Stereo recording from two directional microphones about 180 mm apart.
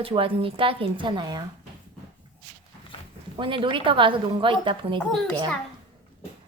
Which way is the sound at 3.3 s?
30° right (ahead or behind).